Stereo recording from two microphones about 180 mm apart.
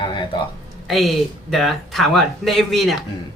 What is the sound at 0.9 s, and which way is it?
Speech, centre (ahead or behind).